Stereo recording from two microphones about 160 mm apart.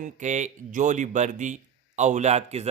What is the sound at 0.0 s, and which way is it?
Speech, 50° right (ahead or behind).